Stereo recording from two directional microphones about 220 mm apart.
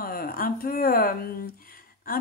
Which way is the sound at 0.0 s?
40° left (ahead or behind).